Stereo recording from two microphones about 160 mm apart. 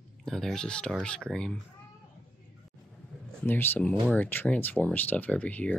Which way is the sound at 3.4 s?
10° left (ahead or behind).